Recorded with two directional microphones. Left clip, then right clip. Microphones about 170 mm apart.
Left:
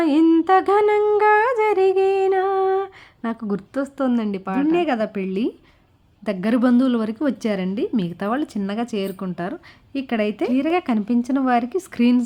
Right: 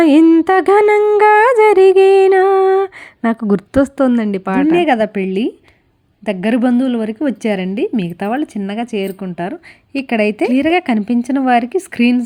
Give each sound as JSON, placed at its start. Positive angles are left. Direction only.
{"t": 0.0, "sound": "music", "side_deg": -35}
{"t": 6.2, "sound": "a woman's voice", "side_deg": -15}